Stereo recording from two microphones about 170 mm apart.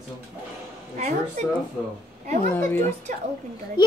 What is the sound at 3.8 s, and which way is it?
Speech, 25° left (ahead or behind).